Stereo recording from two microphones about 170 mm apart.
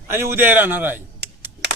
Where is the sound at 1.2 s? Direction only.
80° right.